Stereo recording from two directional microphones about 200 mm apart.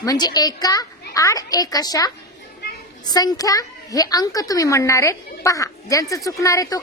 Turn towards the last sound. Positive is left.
turn(degrees=15)  # may be behind; listen again after turning